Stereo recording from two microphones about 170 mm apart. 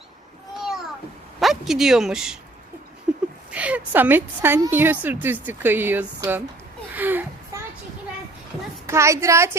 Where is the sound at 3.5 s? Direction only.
10° right (ahead or behind).